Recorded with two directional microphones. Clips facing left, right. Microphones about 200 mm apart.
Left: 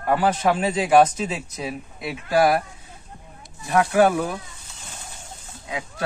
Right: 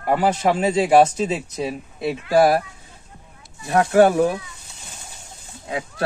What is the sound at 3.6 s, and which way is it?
Speech, 35° right (ahead or behind).